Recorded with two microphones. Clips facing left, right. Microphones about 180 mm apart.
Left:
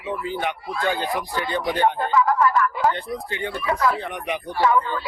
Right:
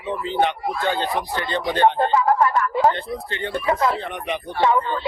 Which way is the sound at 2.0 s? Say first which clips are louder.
Right 2 dB; 30° right (ahead or behind).